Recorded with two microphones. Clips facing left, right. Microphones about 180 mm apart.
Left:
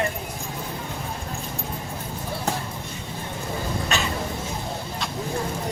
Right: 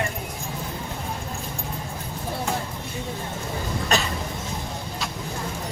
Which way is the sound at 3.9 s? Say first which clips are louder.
Right 4 dB; 40° right (ahead or behind).